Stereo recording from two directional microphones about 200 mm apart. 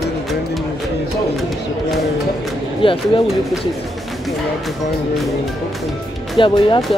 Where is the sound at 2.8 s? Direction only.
25° left (ahead or behind).